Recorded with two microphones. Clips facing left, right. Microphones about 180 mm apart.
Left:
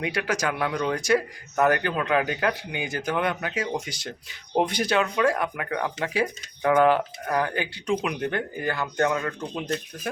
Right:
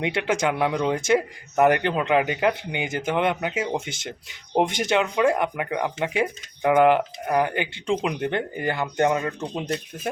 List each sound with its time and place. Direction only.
0.0 s speech: 25° right (ahead or behind)